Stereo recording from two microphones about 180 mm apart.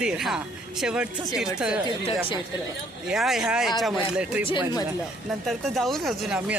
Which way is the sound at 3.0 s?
Centre (ahead or behind).